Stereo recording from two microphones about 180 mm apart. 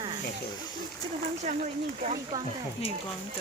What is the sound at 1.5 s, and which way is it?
Speech, 40° right (ahead or behind).